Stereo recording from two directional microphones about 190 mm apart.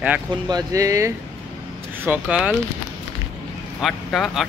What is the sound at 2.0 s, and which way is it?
Speech, 5° right (ahead or behind).